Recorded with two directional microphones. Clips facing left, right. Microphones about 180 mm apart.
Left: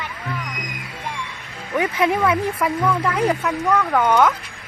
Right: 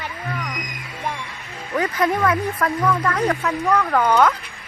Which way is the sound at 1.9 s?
10° left (ahead or behind).